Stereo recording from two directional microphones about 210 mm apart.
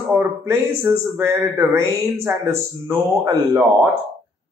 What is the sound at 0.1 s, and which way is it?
Speech, 10° right (ahead or behind).